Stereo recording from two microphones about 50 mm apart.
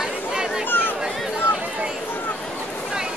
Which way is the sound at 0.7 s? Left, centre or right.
Left.